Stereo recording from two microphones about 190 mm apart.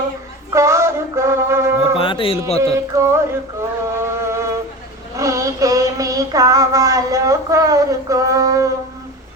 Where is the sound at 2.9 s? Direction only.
15° right (ahead or behind).